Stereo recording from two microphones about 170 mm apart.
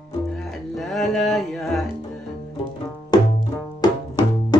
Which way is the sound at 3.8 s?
25° left (ahead or behind).